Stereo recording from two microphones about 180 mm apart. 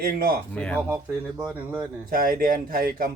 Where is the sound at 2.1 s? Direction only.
50° right (ahead or behind).